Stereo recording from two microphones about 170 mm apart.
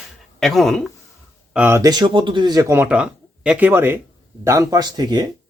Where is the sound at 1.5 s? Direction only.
15° right (ahead or behind).